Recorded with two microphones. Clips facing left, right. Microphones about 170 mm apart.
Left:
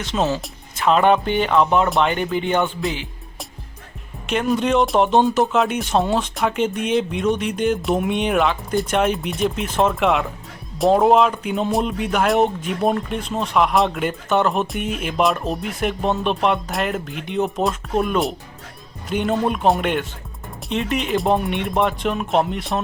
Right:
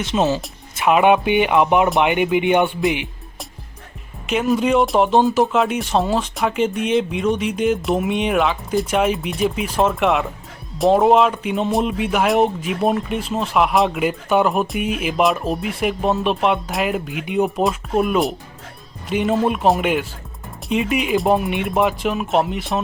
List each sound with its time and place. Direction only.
0.0 s speech: 20° right (ahead or behind)
4.3 s speech: centre (ahead or behind)